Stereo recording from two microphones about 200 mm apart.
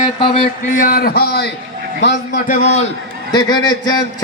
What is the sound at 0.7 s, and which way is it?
A man's voice, 45° left (ahead or behind).